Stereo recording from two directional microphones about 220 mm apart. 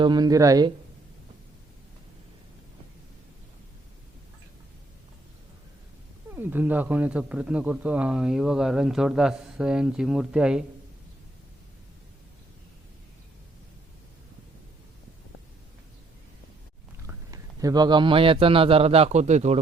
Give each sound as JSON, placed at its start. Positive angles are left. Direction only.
{"t": 0.0, "sound": "speech", "side_deg": -20}
{"t": 6.3, "sound": "speech", "side_deg": -10}
{"t": 17.1, "sound": "a man's voice", "side_deg": -15}